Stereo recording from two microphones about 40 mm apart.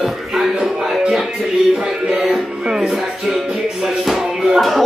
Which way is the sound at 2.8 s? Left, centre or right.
Centre.